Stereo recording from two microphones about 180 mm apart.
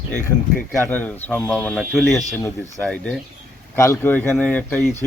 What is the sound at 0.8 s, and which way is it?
Speech, 10° left (ahead or behind).